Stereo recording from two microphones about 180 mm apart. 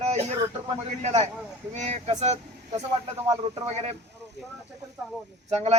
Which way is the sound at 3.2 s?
20° right (ahead or behind).